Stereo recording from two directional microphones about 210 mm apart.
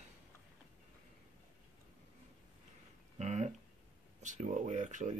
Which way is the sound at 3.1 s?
35° right (ahead or behind).